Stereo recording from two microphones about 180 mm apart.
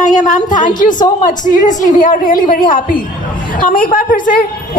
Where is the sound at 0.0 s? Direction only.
45° left (ahead or behind).